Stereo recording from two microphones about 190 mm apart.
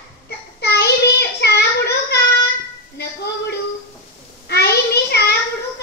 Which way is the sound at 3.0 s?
60° left (ahead or behind).